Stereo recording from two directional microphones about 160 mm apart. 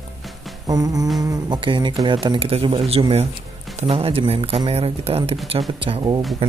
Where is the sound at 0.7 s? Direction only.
20° right (ahead or behind).